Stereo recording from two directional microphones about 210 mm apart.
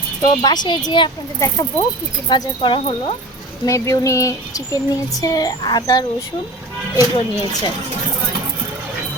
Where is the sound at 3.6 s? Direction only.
15° left (ahead or behind).